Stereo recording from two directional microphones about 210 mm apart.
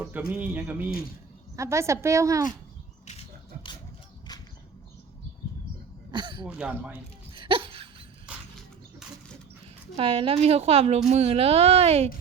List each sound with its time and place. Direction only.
0.0 s a woman's voice: 5° right (ahead or behind)
3.1 s a sound: 25° left (ahead or behind)
6.1 s throat clearing: 20° right (ahead or behind)
6.4 s speech: 5° right (ahead or behind)
7.3 s laughter: 25° right (ahead or behind)
8.3 s a sound: 5° right (ahead or behind)
10.0 s a woman's voice: 25° right (ahead or behind)